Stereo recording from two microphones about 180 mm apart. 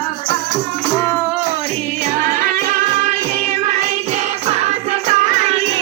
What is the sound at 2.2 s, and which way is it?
Music, 45° right (ahead or behind).